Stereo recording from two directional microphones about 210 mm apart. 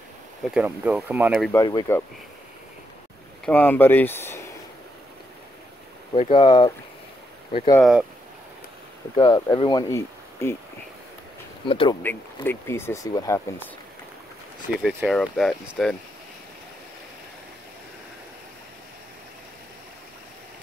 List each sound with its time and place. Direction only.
0.4 s speech: 5° right (ahead or behind)
1.5 s speech: 15° left (ahead or behind)
3.4 s speech: 10° left (ahead or behind)
6.1 s speech: 30° left (ahead or behind)
9.1 s speech: 20° left (ahead or behind)
11.6 s speech: 25° left (ahead or behind)
12.4 s speech: 10° left (ahead or behind)
14.8 s speech: 5° right (ahead or behind)